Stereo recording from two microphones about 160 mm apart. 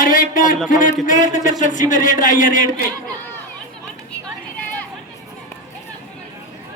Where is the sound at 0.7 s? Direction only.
55° left (ahead or behind).